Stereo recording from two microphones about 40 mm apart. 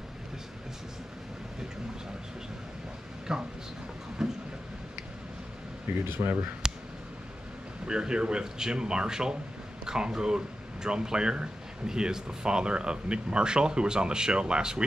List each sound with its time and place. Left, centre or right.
3.3 s speech: centre
4.2 s train: centre
6.0 s speech: right
6.6 s a sound: centre
7.8 s speech: right